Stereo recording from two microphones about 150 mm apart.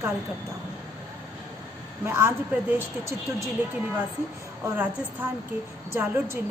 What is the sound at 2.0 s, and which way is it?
Speech, 15° right (ahead or behind).